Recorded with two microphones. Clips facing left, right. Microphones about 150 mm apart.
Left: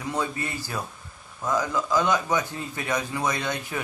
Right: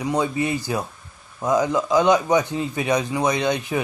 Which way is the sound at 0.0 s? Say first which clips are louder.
Right 7 dB; 15° right (ahead or behind).